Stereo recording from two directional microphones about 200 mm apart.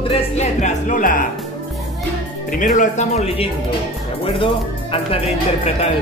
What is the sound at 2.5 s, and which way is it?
Speech, 40° left (ahead or behind).